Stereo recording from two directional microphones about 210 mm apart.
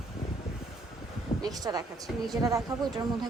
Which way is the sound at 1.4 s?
20° right (ahead or behind).